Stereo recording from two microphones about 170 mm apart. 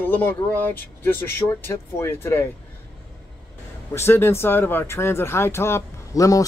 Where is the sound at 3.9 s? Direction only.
15° left (ahead or behind).